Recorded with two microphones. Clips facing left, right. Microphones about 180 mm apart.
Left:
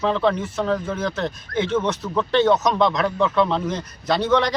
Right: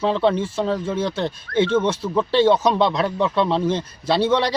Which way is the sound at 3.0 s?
15° right (ahead or behind).